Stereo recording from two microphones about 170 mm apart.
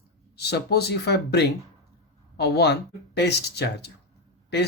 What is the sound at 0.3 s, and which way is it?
Speech, 75° left (ahead or behind).